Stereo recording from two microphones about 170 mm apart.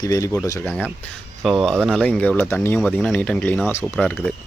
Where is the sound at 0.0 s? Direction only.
20° left (ahead or behind).